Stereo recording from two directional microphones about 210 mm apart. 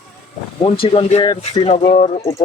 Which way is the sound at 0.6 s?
25° left (ahead or behind).